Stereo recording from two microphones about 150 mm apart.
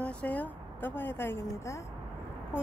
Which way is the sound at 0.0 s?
10° left (ahead or behind).